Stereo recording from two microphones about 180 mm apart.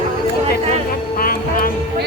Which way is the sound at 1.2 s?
55° left (ahead or behind).